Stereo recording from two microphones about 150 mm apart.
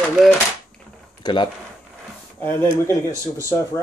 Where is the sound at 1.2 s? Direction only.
30° left (ahead or behind).